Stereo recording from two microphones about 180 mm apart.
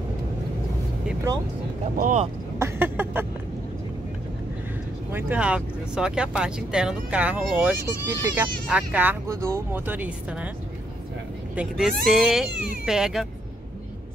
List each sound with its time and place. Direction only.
2.0 s speech: 45° right (ahead or behind)
2.6 s speech: 10° right (ahead or behind)
5.1 s speech: 10° right (ahead or behind)
11.5 s speech: 5° right (ahead or behind)